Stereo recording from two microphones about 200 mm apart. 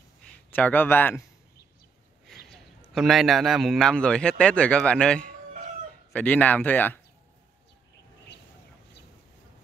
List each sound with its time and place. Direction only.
0.5 s speech: 10° left (ahead or behind)
2.9 s a man's voice: centre (ahead or behind)